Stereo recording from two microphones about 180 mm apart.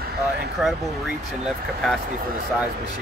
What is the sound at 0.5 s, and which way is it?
Speech, centre (ahead or behind).